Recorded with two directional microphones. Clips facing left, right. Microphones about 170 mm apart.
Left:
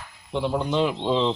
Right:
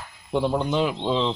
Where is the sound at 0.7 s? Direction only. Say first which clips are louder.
Left 1 dB; 5° right (ahead or behind).